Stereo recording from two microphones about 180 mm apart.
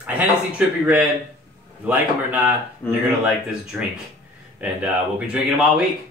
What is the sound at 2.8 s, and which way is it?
Speech, 10° left (ahead or behind).